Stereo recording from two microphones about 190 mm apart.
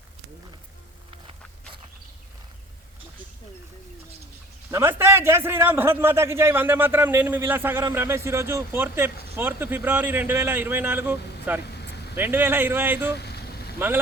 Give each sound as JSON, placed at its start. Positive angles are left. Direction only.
{"t": 4.7, "sound": "a man's voice", "side_deg": -10}
{"t": 11.7, "sound": "vehicle", "side_deg": 60}
{"t": 12.1, "sound": "a man's voice", "side_deg": -10}
{"t": 13.1, "sound": "vehicle", "side_deg": 60}
{"t": 13.7, "sound": "a man's voice", "side_deg": -10}